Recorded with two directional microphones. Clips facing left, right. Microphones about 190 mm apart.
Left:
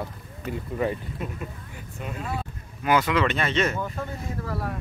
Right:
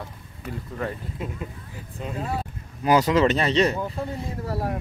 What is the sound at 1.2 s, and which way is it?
Speech, 25° right (ahead or behind).